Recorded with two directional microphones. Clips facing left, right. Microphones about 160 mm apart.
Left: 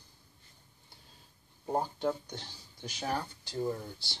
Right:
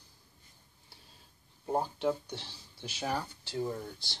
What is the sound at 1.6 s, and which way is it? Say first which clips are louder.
Speech: right 1 dB; centre (ahead or behind).